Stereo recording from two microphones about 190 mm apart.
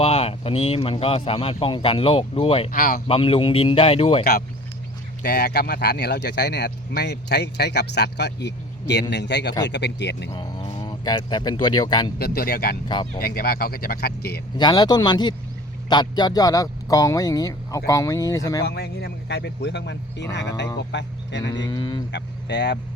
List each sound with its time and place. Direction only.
0.0 s a man's voice: 30° left (ahead or behind)
2.7 s speech: 50° left (ahead or behind)
3.1 s speech: 30° left (ahead or behind)
4.2 s speech: 50° left (ahead or behind)
10.3 s speech: 25° left (ahead or behind)
12.2 s speech: 55° left (ahead or behind)
14.6 s speech: 20° left (ahead or behind)
18.6 s speech: 55° left (ahead or behind)
21.5 s speech: 20° left (ahead or behind)
22.1 s speech: 65° left (ahead or behind)